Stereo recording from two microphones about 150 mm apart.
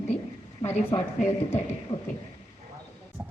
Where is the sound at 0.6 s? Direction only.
15° left (ahead or behind).